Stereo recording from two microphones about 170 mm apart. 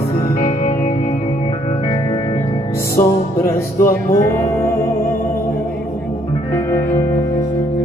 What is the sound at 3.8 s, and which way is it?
Music, 15° left (ahead or behind).